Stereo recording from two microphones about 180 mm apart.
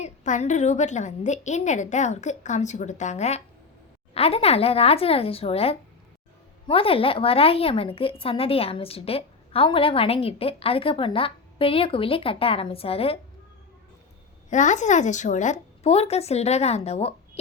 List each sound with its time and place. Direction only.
0.0 s a woman's voice: 40° left (ahead or behind)
14.5 s a woman's voice: 40° left (ahead or behind)